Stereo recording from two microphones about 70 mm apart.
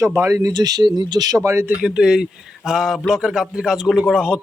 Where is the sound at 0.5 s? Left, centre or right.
Right.